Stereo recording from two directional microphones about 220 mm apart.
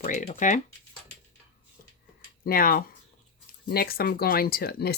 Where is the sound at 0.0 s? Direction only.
35° left (ahead or behind).